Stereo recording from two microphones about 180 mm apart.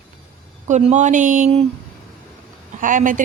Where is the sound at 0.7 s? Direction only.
40° right (ahead or behind).